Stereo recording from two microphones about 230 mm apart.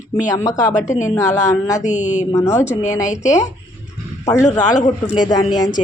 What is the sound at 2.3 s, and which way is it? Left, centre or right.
Speech, centre.